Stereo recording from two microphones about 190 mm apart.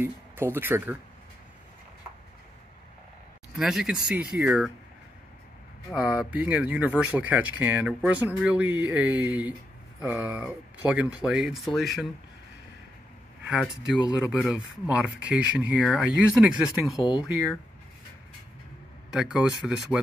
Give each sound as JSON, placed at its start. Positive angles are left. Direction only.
{"t": 0.0, "sound": "speech", "side_deg": -10}
{"t": 3.5, "sound": "speech", "side_deg": -5}
{"t": 5.9, "sound": "speech", "side_deg": -5}
{"t": 13.5, "sound": "speech", "side_deg": -5}
{"t": 17.0, "sound": "speech", "side_deg": 25}
{"t": 19.1, "sound": "speech", "side_deg": -5}